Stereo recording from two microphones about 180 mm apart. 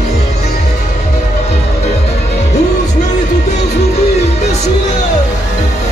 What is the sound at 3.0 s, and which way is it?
Music, 40° left (ahead or behind).